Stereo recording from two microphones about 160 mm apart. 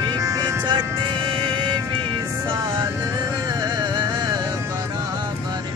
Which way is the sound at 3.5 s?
25° right (ahead or behind).